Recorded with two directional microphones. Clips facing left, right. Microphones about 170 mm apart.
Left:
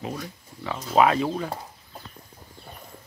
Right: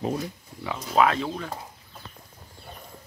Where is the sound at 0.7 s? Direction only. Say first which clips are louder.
Left 2 dB; 5° left (ahead or behind).